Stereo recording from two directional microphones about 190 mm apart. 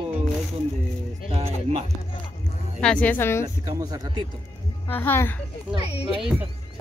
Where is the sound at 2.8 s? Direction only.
5° left (ahead or behind).